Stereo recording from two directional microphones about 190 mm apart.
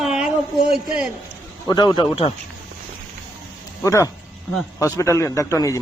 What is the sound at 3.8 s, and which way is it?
A man's voice, 15° left (ahead or behind).